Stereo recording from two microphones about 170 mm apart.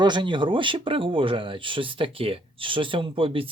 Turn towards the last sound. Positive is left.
turn(degrees=-30)  # may be behind; listen again after turning